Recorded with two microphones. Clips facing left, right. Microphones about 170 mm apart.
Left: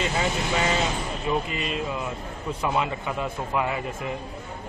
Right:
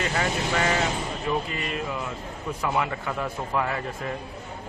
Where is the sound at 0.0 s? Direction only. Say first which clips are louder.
Even; 20° left (ahead or behind).